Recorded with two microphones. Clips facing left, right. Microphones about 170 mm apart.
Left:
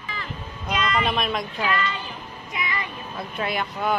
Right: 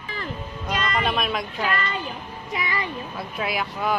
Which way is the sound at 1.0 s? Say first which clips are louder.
Even; centre (ahead or behind).